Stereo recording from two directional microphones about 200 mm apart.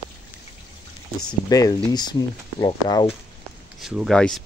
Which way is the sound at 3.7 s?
Centre (ahead or behind).